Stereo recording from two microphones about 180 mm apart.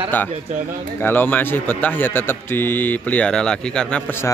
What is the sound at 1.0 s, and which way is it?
A man's voice, 10° left (ahead or behind).